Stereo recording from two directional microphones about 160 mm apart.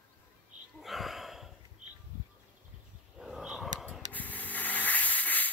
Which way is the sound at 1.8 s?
50° right (ahead or behind).